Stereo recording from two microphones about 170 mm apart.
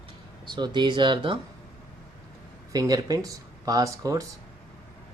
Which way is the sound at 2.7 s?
20° right (ahead or behind).